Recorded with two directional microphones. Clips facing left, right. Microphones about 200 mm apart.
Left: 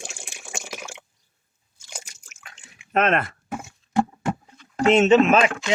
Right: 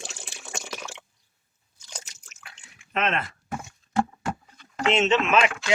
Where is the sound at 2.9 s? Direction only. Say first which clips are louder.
Left 6 dB; 50° left (ahead or behind).